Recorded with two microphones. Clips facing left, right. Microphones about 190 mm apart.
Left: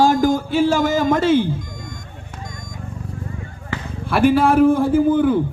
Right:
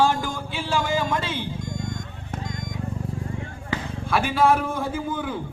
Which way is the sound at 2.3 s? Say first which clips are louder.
Right 4 dB; 60° right (ahead or behind).